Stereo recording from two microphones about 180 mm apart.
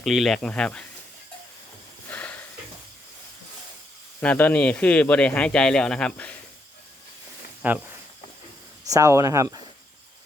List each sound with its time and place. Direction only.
0.0 s speech: centre (ahead or behind)
2.0 s a sound: 10° left (ahead or behind)
4.2 s speech: 10° left (ahead or behind)
7.6 s speech: 10° right (ahead or behind)